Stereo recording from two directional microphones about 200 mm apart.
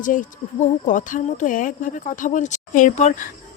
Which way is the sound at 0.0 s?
40° left (ahead or behind).